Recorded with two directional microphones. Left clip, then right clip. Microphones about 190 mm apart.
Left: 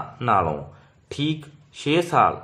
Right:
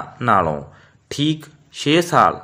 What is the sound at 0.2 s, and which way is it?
Speech, 20° right (ahead or behind).